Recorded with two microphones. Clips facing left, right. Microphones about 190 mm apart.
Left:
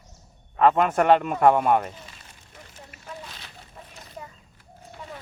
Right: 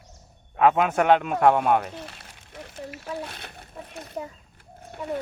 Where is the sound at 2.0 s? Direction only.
70° right (ahead or behind).